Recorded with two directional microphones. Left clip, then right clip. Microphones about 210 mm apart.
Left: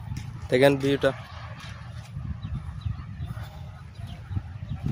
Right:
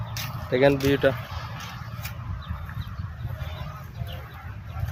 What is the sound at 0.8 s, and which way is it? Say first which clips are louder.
Speech: right 2 dB; 30° left (ahead or behind).